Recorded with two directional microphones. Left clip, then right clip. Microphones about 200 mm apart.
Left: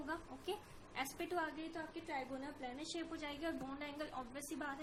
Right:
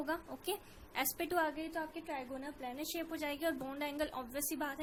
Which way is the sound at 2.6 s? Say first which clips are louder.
Right 6 dB; 50° right (ahead or behind).